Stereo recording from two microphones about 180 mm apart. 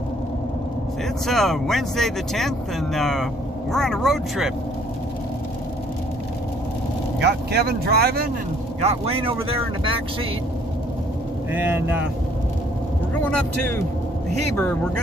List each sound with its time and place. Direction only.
1.2 s speech: centre (ahead or behind)
7.2 s speech: 65° right (ahead or behind)
8.8 s speech: 30° right (ahead or behind)
11.5 s speech: 10° right (ahead or behind)
13.2 s speech: 10° left (ahead or behind)